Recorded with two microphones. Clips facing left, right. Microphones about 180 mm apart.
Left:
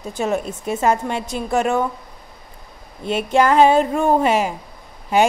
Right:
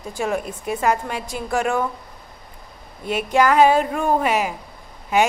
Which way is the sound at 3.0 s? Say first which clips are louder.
Left 1 dB; 30° left (ahead or behind).